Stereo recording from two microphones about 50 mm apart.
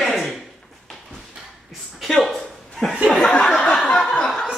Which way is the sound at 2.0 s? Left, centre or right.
Centre.